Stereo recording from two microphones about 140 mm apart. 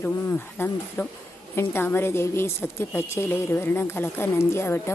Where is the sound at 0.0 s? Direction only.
15° left (ahead or behind).